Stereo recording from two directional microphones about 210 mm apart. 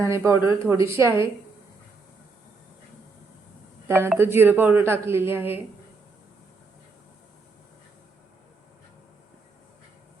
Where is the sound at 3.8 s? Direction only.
10° right (ahead or behind).